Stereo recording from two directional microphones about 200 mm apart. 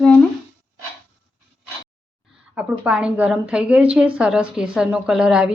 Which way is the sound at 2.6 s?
5° right (ahead or behind).